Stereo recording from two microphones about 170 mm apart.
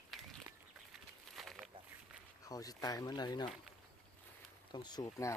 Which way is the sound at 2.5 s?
20° left (ahead or behind).